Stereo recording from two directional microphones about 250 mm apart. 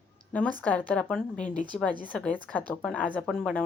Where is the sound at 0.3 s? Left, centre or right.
Centre.